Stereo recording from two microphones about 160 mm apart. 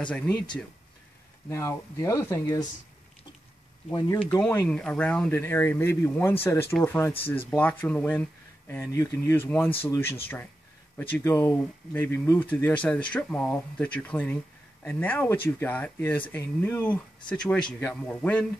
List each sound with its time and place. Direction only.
1.5 s speech: 20° left (ahead or behind)
4.2 s speech: 10° left (ahead or behind)